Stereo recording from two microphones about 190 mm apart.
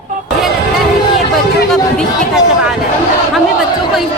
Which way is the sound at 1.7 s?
Centre (ahead or behind).